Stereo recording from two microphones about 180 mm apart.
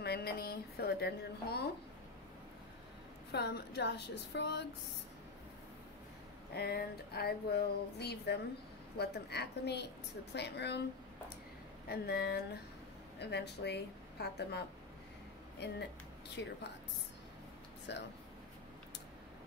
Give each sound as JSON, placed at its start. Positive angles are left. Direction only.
{"t": 0.0, "sound": "a sound", "side_deg": 60}
{"t": 3.3, "sound": "a woman's voice", "side_deg": 65}
{"t": 6.5, "sound": "a sound", "side_deg": 60}
{"t": 10.3, "sound": "a woman's voice", "side_deg": 70}
{"t": 11.9, "sound": "a sound", "side_deg": 60}
{"t": 13.2, "sound": "a woman's voice", "side_deg": 70}
{"t": 15.6, "sound": "a woman's voice", "side_deg": 70}
{"t": 16.4, "sound": "speech", "side_deg": 85}
{"t": 17.9, "sound": "a woman's voice", "side_deg": 75}